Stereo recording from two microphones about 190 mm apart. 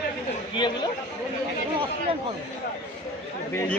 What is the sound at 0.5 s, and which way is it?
Speech, 25° left (ahead or behind).